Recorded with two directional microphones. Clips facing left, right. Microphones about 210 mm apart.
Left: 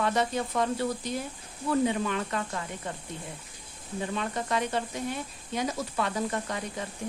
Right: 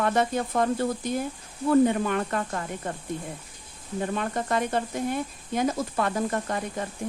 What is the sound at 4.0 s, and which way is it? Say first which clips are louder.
Speech: right 3 dB; 50° right (ahead or behind).